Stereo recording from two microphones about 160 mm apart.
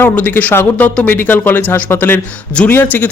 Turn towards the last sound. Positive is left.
turn(degrees=10)  # may be behind; listen again after turning